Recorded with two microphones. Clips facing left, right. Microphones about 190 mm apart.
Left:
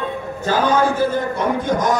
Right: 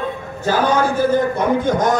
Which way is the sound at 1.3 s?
55° right (ahead or behind).